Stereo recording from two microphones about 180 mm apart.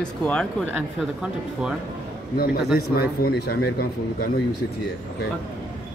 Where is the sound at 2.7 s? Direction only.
60° left (ahead or behind).